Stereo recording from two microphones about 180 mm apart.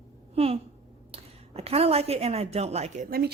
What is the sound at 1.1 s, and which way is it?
A woman's voice, 35° right (ahead or behind).